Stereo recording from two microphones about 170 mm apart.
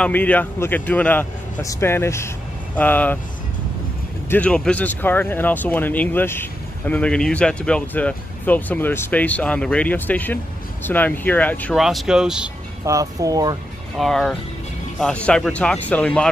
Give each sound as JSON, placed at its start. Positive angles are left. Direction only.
{"t": 0.0, "sound": "speech", "side_deg": 10}
{"t": 4.3, "sound": "speech", "side_deg": 5}
{"t": 11.7, "sound": "speech", "side_deg": 0}
{"t": 12.8, "sound": "speech", "side_deg": -20}
{"t": 13.9, "sound": "speech", "side_deg": 0}